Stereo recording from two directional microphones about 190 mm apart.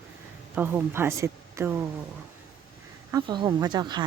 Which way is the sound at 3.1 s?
20° right (ahead or behind).